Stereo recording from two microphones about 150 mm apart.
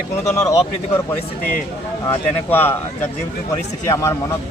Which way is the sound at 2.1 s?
15° left (ahead or behind).